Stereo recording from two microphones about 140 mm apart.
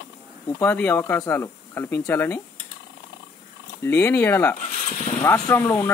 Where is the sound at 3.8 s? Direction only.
15° left (ahead or behind).